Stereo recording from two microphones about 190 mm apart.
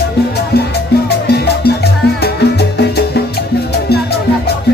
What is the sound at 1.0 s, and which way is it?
Music, 60° left (ahead or behind).